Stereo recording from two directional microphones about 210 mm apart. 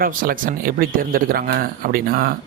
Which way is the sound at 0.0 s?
40° right (ahead or behind).